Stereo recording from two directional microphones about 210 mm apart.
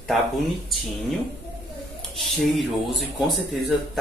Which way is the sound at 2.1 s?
Centre (ahead or behind).